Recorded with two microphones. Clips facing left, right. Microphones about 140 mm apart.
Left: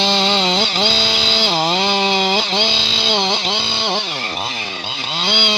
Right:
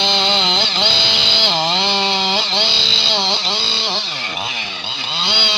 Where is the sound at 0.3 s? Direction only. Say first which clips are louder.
Left 3 dB; 45° left (ahead or behind).